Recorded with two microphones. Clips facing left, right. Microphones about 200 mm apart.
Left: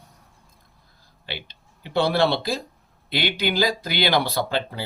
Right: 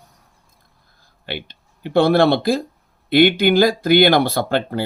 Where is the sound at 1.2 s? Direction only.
55° right (ahead or behind).